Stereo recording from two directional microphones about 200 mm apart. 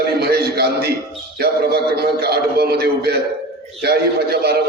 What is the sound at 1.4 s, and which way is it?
A man's voice, 55° right (ahead or behind).